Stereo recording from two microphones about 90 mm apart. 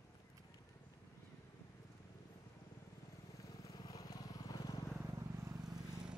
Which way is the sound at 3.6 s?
40° left (ahead or behind).